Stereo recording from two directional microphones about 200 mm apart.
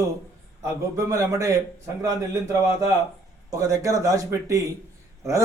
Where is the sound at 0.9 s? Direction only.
15° right (ahead or behind).